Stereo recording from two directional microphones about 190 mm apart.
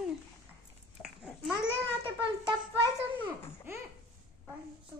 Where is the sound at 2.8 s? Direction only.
25° right (ahead or behind).